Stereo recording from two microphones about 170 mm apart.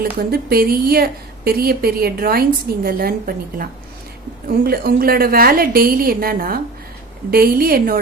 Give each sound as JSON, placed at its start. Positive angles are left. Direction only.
{"t": 0.2, "sound": "a woman's voice", "side_deg": -60}